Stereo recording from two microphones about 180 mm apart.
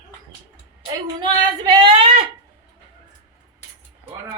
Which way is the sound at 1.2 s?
25° right (ahead or behind).